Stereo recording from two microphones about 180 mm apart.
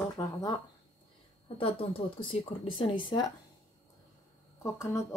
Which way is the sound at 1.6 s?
30° left (ahead or behind).